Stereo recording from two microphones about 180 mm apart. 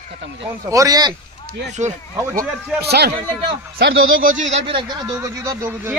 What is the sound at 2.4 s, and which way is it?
Speech, 65° right (ahead or behind).